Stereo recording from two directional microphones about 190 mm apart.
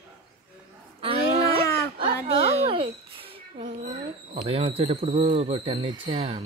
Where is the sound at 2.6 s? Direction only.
30° right (ahead or behind).